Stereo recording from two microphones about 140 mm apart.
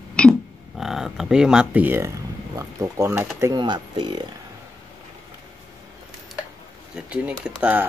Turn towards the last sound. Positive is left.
turn(degrees=-5)  # may be behind; listen again after turning